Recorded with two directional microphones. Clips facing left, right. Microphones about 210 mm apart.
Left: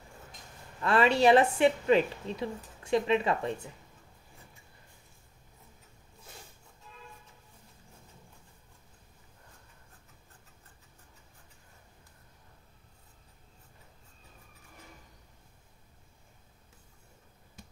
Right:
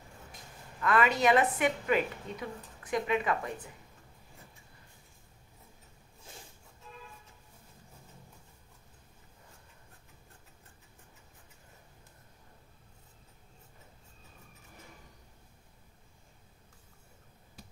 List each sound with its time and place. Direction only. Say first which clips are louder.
0.7 s a woman's voice: left 3 dB; 30° left (ahead or behind)